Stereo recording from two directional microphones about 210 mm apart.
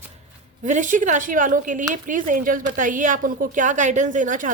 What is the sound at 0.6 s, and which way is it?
A woman's voice, 35° right (ahead or behind).